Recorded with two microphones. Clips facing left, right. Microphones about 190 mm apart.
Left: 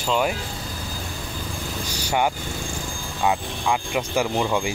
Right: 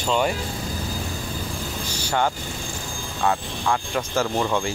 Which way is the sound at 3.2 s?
10° left (ahead or behind).